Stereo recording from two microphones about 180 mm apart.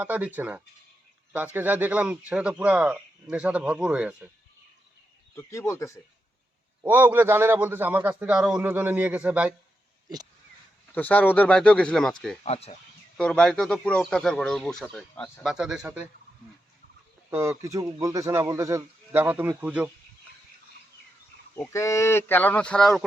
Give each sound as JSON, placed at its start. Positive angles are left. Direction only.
{"t": 0.0, "sound": "speech", "side_deg": -10}
{"t": 5.3, "sound": "speech", "side_deg": 15}
{"t": 6.8, "sound": "speech", "side_deg": -10}
{"t": 10.9, "sound": "speech", "side_deg": 10}
{"t": 12.4, "sound": "speech", "side_deg": 35}
{"t": 13.1, "sound": "speech", "side_deg": 5}
{"t": 17.3, "sound": "speech", "side_deg": -15}
{"t": 21.5, "sound": "speech", "side_deg": 15}